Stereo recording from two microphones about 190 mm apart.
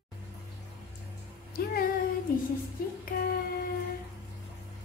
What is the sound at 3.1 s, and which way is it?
Music, 50° left (ahead or behind).